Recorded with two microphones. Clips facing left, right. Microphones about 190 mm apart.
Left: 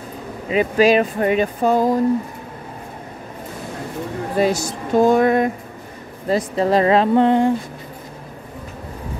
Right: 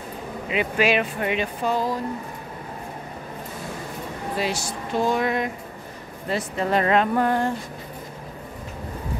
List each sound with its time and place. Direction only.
0.5 s speech: 40° left (ahead or behind)
4.4 s speech: 45° left (ahead or behind)
6.2 s speech: 35° left (ahead or behind); by 7.5 s 20° left (ahead or behind)